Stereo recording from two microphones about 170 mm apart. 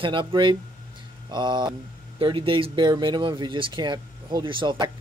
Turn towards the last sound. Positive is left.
turn(degrees=-30)  # may be behind; listen again after turning